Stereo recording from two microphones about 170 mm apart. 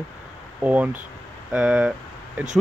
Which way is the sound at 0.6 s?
10° right (ahead or behind).